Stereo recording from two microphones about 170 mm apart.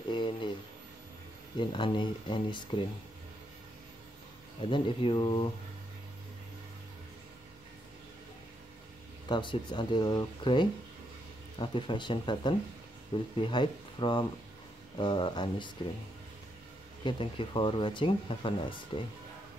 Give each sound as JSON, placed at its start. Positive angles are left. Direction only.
{"t": 0.1, "sound": "a sound", "side_deg": 30}
{"t": 1.7, "sound": "speech", "side_deg": 25}
{"t": 4.6, "sound": "speech", "side_deg": 30}
{"t": 9.3, "sound": "speech", "side_deg": 25}
{"t": 17.0, "sound": "speech", "side_deg": 30}